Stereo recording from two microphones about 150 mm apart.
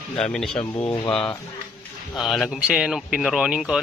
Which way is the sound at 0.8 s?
35° left (ahead or behind).